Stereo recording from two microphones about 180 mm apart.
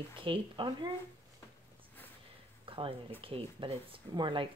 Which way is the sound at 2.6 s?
30° right (ahead or behind).